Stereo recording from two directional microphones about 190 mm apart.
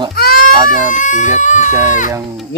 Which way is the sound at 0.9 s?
40° left (ahead or behind).